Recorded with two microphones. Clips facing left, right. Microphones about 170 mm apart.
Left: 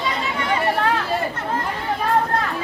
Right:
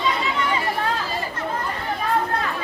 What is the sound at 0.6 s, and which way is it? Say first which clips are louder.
Chatter: left 4 dB; 65° left (ahead or behind).